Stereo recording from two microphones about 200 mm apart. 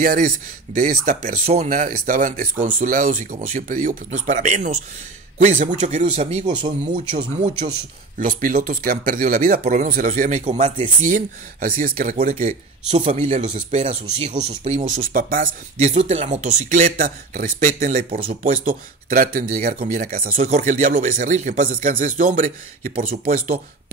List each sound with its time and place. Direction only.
0.0 s speech: 45° right (ahead or behind); by 7.7 s 25° right (ahead or behind)
8.2 s speech: 40° right (ahead or behind)
20.3 s speech: 35° right (ahead or behind)